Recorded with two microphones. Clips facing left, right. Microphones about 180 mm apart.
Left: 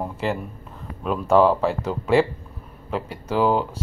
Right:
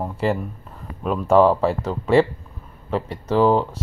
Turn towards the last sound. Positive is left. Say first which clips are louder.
# right 3 dB
turn(degrees=0)  # may be behind; listen again after turning